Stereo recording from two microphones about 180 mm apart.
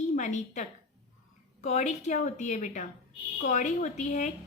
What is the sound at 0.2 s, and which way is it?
A woman's voice, 40° left (ahead or behind).